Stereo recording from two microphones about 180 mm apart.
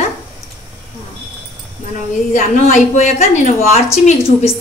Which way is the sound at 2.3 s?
45° left (ahead or behind).